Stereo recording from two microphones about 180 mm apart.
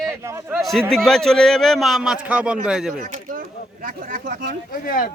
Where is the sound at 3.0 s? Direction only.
50° right (ahead or behind).